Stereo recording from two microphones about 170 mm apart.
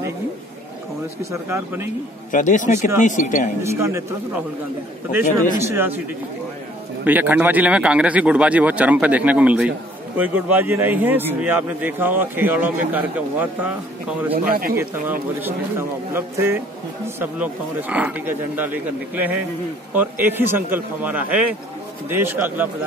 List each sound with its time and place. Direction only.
1.3 s a man's voice: 15° right (ahead or behind)
2.3 s speech: 50° left (ahead or behind)
3.6 s a man's voice: 15° right (ahead or behind)
5.6 s a man's voice: 15° right (ahead or behind)
7.1 s a man's voice: 10° right (ahead or behind)
14.3 s speech: 60° right (ahead or behind)
16.1 s a man's voice: 15° right (ahead or behind)